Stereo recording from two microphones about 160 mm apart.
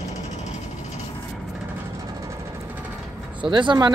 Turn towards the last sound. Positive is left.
turn(degrees=-30)  # may be behind; listen again after turning